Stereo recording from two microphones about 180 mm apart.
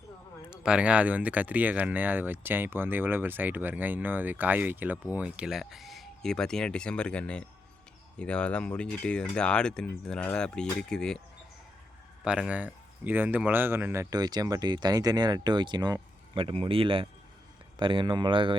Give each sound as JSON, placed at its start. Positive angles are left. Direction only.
{"t": 0.5, "sound": "speech", "side_deg": -5}
{"t": 12.2, "sound": "speech", "side_deg": -5}